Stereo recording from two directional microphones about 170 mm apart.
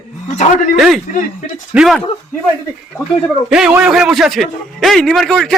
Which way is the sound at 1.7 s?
Centre (ahead or behind).